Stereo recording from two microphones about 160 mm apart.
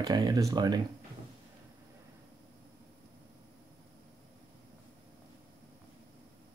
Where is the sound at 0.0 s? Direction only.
25° right (ahead or behind).